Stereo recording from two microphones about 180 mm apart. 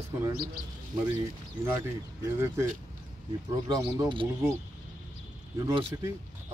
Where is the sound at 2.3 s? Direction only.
15° right (ahead or behind).